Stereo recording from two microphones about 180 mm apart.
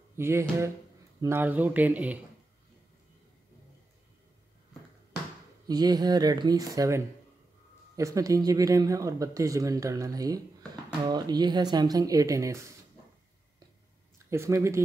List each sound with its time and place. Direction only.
0.1 s speech: 15° right (ahead or behind)
5.7 s speech: 20° right (ahead or behind)
14.1 s speech: 15° right (ahead or behind)